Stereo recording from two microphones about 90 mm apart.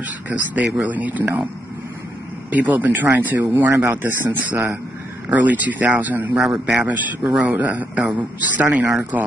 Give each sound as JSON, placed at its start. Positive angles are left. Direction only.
{"t": 0.3, "sound": "a man's voice", "side_deg": -15}
{"t": 2.5, "sound": "a man's voice", "side_deg": -20}
{"t": 6.3, "sound": "a man's voice", "side_deg": -5}
{"t": 7.3, "sound": "a man's voice", "side_deg": -20}